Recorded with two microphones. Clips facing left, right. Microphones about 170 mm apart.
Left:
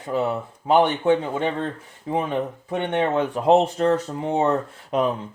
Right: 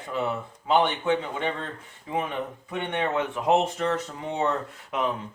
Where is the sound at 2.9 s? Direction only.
35° left (ahead or behind).